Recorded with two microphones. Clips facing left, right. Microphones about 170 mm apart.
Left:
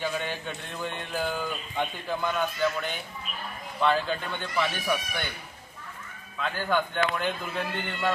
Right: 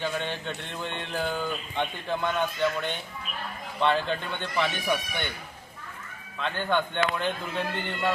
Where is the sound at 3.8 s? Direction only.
5° left (ahead or behind).